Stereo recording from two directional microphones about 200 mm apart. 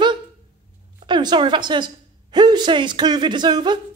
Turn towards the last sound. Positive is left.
turn(degrees=-20)  # may be behind; listen again after turning